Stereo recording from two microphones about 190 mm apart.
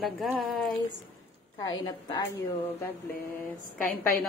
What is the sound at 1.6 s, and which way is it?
Speech, 25° left (ahead or behind).